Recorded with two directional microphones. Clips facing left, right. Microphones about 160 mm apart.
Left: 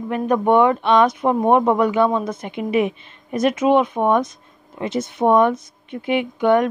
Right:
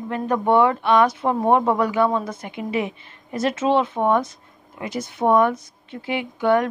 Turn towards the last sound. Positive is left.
turn(degrees=20)  # may be behind; listen again after turning